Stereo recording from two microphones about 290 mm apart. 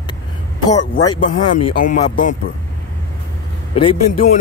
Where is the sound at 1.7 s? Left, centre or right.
Left.